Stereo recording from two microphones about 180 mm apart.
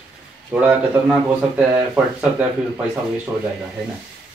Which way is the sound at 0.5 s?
5° right (ahead or behind).